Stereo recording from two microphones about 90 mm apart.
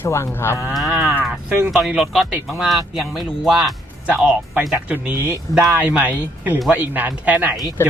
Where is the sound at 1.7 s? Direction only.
10° right (ahead or behind).